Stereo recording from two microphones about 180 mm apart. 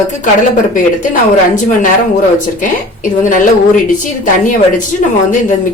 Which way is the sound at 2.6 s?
45° left (ahead or behind).